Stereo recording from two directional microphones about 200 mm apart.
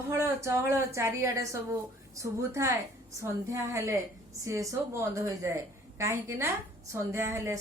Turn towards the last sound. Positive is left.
turn(degrees=-15)  # may be behind; listen again after turning